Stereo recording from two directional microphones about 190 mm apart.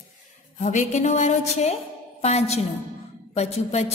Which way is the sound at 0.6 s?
40° left (ahead or behind).